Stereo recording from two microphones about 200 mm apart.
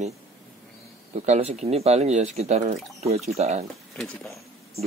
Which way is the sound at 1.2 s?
35° right (ahead or behind).